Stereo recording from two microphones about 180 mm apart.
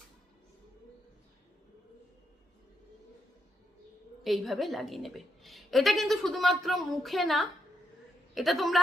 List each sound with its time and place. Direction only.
4.2 s a woman's voice: centre (ahead or behind)